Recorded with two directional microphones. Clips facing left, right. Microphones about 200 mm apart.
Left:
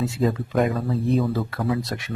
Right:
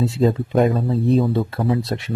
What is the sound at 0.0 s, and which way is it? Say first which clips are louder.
Speech: right 5 dB; 30° right (ahead or behind).